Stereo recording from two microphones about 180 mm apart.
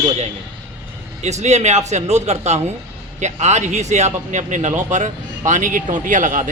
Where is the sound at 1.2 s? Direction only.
40° right (ahead or behind).